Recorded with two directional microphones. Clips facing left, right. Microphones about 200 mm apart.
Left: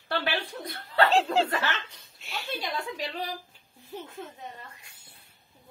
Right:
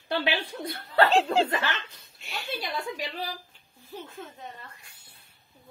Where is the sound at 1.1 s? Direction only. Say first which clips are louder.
Right 1 dB; centre (ahead or behind).